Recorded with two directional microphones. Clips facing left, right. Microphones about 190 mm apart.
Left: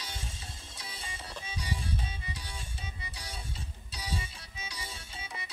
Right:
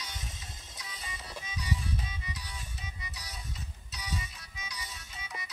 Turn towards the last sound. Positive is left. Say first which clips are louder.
# left 1 dB
turn(degrees=30)  # may be behind; listen again after turning